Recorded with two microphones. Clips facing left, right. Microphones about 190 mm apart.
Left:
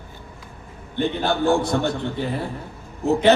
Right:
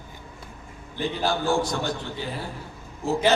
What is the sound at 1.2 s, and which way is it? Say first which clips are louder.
Speech: left 3 dB; 60° left (ahead or behind).